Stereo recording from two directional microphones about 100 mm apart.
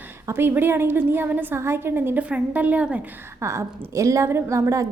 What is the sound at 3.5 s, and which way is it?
A woman's voice, 30° right (ahead or behind).